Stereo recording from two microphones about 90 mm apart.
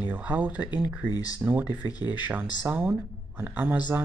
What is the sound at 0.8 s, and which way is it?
Speech, 45° left (ahead or behind).